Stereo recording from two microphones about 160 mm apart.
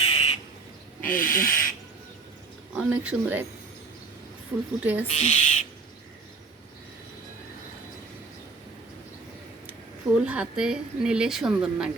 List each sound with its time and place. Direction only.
0.0 s crow: 35° left (ahead or behind)
1.0 s speech: 60° left (ahead or behind)
2.7 s speech: 5° right (ahead or behind)
4.8 s speech: 10° right (ahead or behind)
5.0 s speech: 40° left (ahead or behind)
10.2 s a woman's voice: 5° right (ahead or behind)